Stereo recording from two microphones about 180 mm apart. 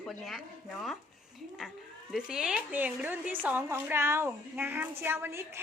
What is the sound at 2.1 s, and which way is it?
A child's voice, 5° right (ahead or behind).